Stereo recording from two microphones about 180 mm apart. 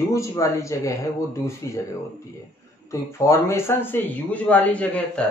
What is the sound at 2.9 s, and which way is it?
Speech, 15° left (ahead or behind).